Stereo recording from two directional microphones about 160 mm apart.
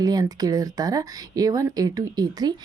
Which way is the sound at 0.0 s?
25° right (ahead or behind).